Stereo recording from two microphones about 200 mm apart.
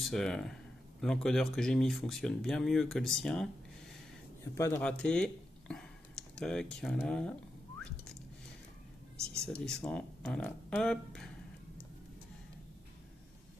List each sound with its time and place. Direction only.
0.0 s speech: centre (ahead or behind)
4.6 s speech: 15° left (ahead or behind)
7.8 s whistling: 5° left (ahead or behind)
9.4 s speech: 5° left (ahead or behind)